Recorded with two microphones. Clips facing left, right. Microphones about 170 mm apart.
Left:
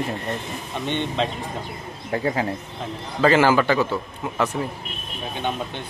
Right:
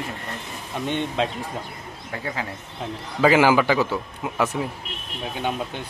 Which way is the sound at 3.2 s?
10° right (ahead or behind).